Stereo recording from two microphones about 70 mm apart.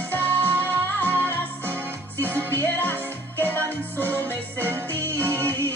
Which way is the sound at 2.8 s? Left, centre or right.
Left.